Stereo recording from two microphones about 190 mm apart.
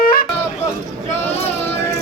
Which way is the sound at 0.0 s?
50° left (ahead or behind).